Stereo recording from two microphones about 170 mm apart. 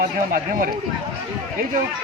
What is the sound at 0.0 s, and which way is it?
Speech, 50° right (ahead or behind).